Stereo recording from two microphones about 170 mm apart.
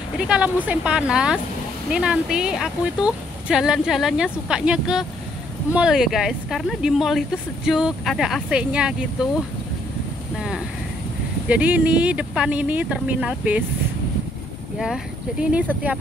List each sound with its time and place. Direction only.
0.2 s speech: 5° right (ahead or behind)
10.3 s speech: 5° right (ahead or behind)
15.7 s speech: 10° right (ahead or behind)